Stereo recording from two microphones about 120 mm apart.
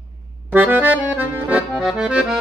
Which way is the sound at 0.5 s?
15° right (ahead or behind).